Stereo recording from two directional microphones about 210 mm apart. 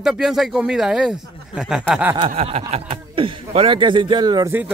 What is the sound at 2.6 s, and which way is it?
Speech, 25° right (ahead or behind).